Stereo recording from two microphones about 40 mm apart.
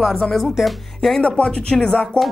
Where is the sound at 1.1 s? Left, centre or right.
Left.